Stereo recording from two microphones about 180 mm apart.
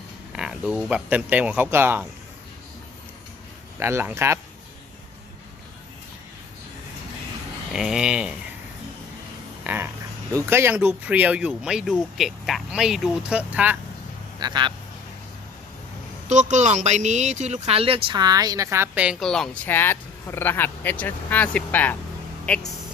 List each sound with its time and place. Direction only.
0.3 s speech: 5° right (ahead or behind)
3.8 s speech: 15° right (ahead or behind)
7.7 s speech: 5° right (ahead or behind)
9.6 s a sound: 10° right (ahead or behind)
10.3 s speech: 15° right (ahead or behind)
14.3 s a man's voice: 25° right (ahead or behind)
16.3 s speech: 40° right (ahead or behind); by 21.9 s 10° left (ahead or behind)